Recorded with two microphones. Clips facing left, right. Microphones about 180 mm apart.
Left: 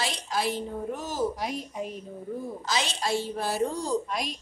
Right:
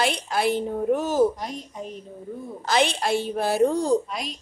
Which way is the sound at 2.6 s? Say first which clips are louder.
Right 8 dB; 60° right (ahead or behind).